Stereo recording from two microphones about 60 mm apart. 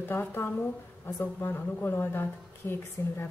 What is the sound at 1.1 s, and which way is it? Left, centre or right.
A woman's voice, left.